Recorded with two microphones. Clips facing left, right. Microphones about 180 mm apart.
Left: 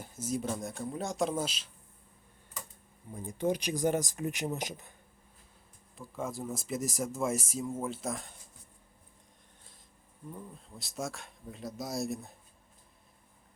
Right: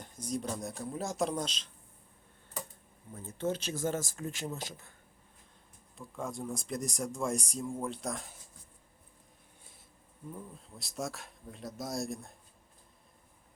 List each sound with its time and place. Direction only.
0.0 s speech: 5° left (ahead or behind)
3.1 s speech: 15° left (ahead or behind)
6.0 s speech: centre (ahead or behind)
10.3 s speech: centre (ahead or behind)